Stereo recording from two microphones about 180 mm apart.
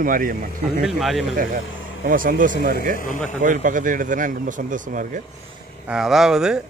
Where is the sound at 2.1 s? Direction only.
50° right (ahead or behind).